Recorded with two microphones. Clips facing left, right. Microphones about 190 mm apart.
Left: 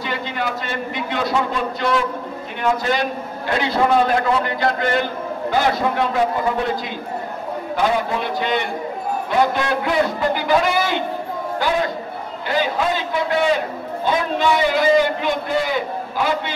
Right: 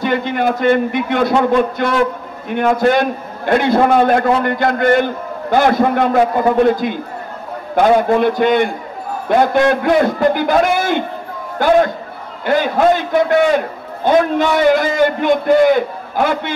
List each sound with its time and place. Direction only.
0.0 s a man's voice: 55° right (ahead or behind)